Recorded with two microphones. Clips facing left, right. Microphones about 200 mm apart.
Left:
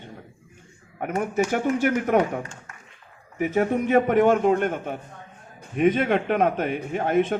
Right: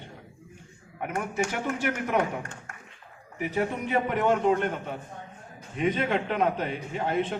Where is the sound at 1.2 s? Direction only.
50° left (ahead or behind).